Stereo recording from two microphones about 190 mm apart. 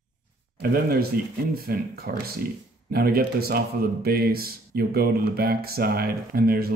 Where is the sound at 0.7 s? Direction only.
50° right (ahead or behind).